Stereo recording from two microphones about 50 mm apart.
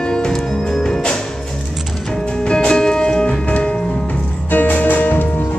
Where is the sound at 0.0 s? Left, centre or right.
Centre.